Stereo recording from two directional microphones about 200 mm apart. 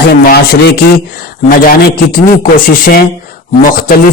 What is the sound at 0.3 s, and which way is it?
A man's voice, 50° left (ahead or behind).